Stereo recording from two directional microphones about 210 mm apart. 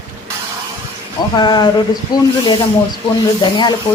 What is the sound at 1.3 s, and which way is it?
Speech, 20° left (ahead or behind).